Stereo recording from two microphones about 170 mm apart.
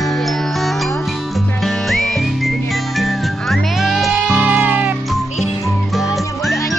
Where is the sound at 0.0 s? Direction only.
Centre (ahead or behind).